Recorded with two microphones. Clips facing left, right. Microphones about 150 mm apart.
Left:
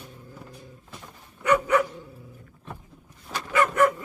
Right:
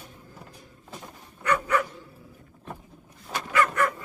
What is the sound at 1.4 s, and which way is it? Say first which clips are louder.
Dog: left 4 dB; 10° left (ahead or behind).